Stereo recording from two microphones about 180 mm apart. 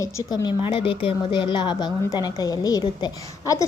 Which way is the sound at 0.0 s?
20° left (ahead or behind).